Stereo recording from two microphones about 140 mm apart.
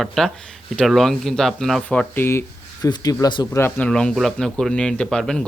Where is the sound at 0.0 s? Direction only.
Centre (ahead or behind).